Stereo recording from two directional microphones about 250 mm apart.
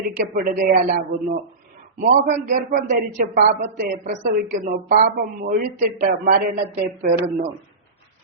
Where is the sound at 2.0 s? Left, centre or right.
Right.